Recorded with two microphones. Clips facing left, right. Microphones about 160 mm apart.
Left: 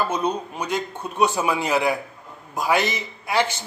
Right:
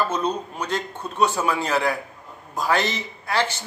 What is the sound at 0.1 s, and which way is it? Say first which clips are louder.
A man's voice: left 1 dB; 15° left (ahead or behind).